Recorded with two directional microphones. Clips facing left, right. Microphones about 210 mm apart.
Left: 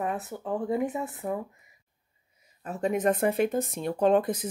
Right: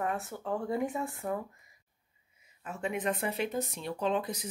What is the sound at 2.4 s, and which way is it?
Speech, 40° left (ahead or behind).